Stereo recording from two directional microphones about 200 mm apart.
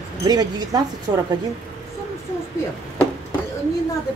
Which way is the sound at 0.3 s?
20° right (ahead or behind).